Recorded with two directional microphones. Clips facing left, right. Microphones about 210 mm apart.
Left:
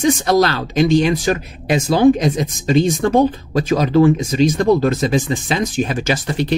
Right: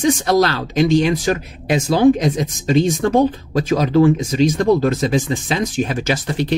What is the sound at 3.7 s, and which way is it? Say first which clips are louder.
Speech: left 1 dB; 45° left (ahead or behind).